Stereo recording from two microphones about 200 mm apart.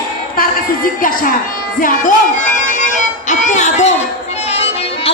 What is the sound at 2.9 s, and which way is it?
Music, 35° left (ahead or behind).